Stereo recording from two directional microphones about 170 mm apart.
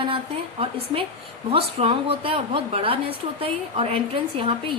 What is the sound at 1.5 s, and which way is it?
A woman's voice, 35° right (ahead or behind).